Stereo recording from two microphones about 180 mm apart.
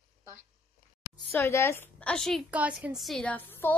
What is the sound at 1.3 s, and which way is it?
A woman's voice, 15° left (ahead or behind).